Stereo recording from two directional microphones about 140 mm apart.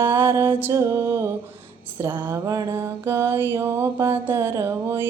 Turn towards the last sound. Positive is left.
turn(degrees=-15)  # may be behind; listen again after turning